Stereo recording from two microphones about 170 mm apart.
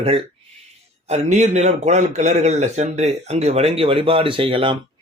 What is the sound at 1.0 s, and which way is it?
A man's voice, 40° right (ahead or behind).